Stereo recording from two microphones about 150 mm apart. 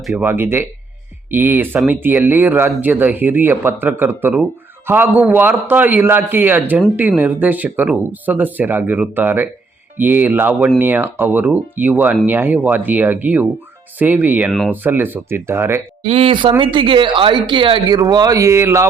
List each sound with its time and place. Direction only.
0.2 s speech: 15° right (ahead or behind)
16.0 s speech: 40° right (ahead or behind); by 18.9 s 20° right (ahead or behind)